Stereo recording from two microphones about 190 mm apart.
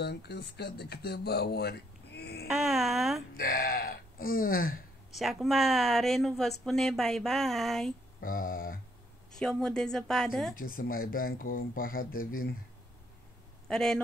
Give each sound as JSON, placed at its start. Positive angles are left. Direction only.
{"t": 0.0, "sound": "speech", "side_deg": 60}
{"t": 2.4, "sound": "speech", "side_deg": 0}
{"t": 3.3, "sound": "speech", "side_deg": 50}
{"t": 5.1, "sound": "speech", "side_deg": 0}
{"t": 8.2, "sound": "speech", "side_deg": 45}
{"t": 9.4, "sound": "speech", "side_deg": 5}
{"t": 10.6, "sound": "speech", "side_deg": 50}
{"t": 13.7, "sound": "speech", "side_deg": 5}